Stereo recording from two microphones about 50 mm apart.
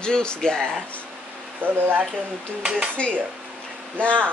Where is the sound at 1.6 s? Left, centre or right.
Right.